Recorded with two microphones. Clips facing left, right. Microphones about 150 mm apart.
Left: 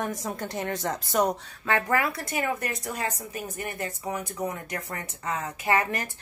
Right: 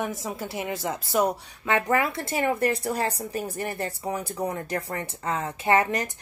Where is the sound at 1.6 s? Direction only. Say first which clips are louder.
Right 2 dB; 20° right (ahead or behind).